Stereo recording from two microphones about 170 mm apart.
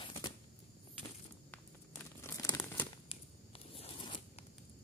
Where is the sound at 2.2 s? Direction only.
15° left (ahead or behind).